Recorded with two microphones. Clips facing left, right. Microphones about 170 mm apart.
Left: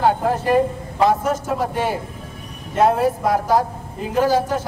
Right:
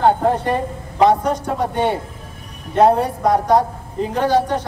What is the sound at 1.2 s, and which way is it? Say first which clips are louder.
Speech: right 1 dB; 5° left (ahead or behind).